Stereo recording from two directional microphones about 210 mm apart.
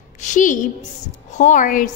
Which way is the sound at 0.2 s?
35° left (ahead or behind).